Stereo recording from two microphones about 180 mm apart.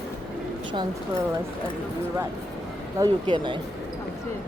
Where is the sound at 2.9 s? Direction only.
25° right (ahead or behind).